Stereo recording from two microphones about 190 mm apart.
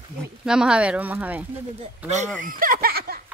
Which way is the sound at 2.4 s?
45° right (ahead or behind).